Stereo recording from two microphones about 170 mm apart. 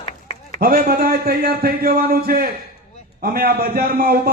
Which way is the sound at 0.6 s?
60° right (ahead or behind).